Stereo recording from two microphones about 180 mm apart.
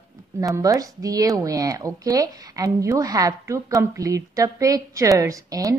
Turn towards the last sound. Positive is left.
turn(degrees=-20)  # may be behind; listen again after turning